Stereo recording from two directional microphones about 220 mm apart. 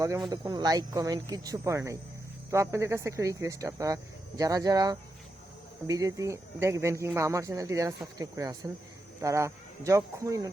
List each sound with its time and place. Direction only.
0.3 s speech: 20° right (ahead or behind)